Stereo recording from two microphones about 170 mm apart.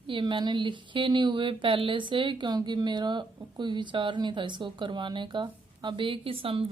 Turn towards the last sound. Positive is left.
turn(degrees=-30)  # may be behind; listen again after turning